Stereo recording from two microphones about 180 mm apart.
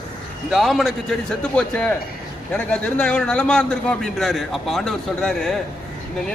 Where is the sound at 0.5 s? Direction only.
Centre (ahead or behind).